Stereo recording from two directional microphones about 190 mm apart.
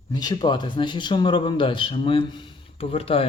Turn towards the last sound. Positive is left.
turn(degrees=30)  # may be behind; listen again after turning